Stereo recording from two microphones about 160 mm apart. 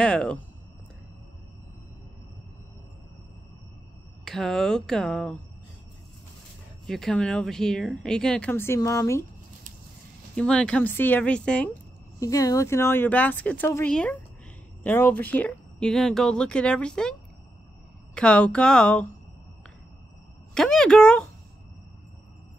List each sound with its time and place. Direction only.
0.0 s speech: 5° left (ahead or behind)
4.2 s speech: 5° left (ahead or behind)
6.9 s speech: 5° left (ahead or behind)
10.3 s speech: 5° left (ahead or behind)
12.2 s speech: 20° left (ahead or behind); by 17.1 s 5° left (ahead or behind)
18.1 s speech: 5° left (ahead or behind)
20.5 s speech: 5° left (ahead or behind)